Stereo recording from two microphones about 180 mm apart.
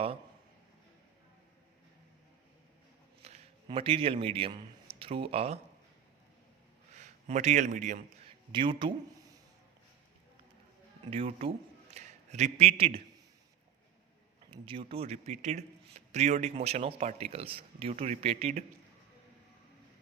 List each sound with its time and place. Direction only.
3.7 s a man's voice: 30° right (ahead or behind)
6.9 s a man's voice: 40° right (ahead or behind)
8.5 s a man's voice: 25° right (ahead or behind)
11.1 s a man's voice: 35° right (ahead or behind)
14.5 s speech: 30° right (ahead or behind)